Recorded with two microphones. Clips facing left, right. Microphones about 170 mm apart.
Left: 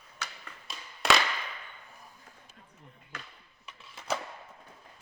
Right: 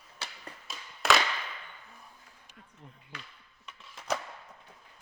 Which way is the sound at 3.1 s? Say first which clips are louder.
Left 2 dB; 45° left (ahead or behind).